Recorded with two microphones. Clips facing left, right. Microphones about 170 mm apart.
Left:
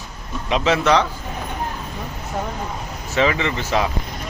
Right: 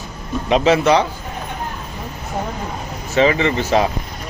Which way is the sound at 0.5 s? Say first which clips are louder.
Right 5 dB; 40° right (ahead or behind).